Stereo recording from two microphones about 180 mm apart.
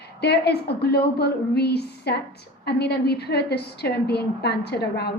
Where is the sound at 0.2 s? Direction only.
65° left (ahead or behind).